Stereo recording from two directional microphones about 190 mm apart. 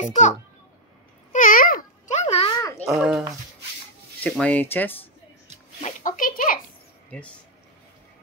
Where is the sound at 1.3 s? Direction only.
45° left (ahead or behind).